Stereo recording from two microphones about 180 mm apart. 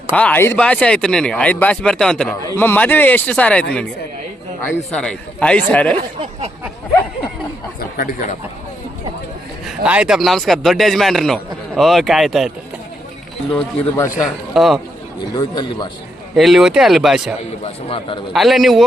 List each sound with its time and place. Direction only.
0.2 s a man's voice: 10° left (ahead or behind)
4.7 s a man's voice: 5° left (ahead or behind)
7.8 s speech: 55° left (ahead or behind)
9.6 s speech: 5° right (ahead or behind)
13.9 s a man's voice: 15° left (ahead or behind)
14.5 s a man's voice: centre (ahead or behind)
15.3 s a man's voice: 20° left (ahead or behind)
16.3 s speech: centre (ahead or behind)
17.8 s a man's voice: 30° left (ahead or behind)
18.3 s speech: centre (ahead or behind)